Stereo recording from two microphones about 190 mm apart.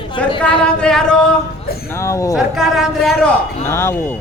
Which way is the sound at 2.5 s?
Centre (ahead or behind).